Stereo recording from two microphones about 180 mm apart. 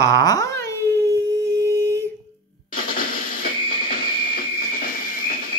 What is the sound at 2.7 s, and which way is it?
Drum, 50° left (ahead or behind).